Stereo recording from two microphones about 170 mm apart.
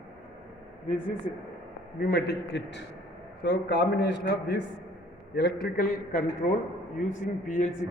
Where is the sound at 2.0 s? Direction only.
65° left (ahead or behind); by 4.5 s 80° left.